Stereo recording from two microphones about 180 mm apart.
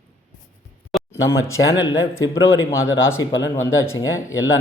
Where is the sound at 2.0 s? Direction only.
90° left.